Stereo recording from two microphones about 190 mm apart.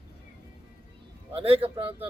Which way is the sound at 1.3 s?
30° right (ahead or behind).